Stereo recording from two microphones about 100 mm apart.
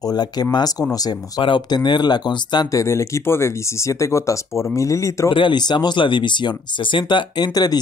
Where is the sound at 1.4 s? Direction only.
55° left (ahead or behind).